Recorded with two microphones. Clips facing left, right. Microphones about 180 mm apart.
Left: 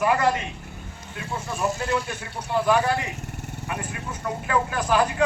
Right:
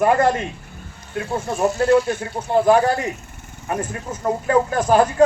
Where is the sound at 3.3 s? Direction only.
70° left (ahead or behind).